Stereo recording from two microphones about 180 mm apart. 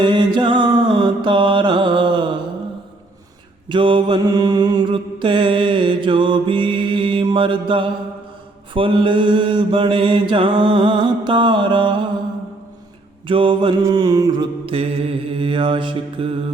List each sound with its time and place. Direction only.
0.0 s mantra: 25° right (ahead or behind)
3.7 s mantra: 25° right (ahead or behind)
13.2 s mantra: 30° right (ahead or behind)